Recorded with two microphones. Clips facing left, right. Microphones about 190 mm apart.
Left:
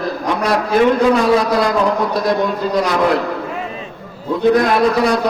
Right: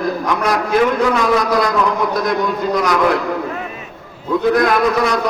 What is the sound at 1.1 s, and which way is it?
Speech, 30° left (ahead or behind).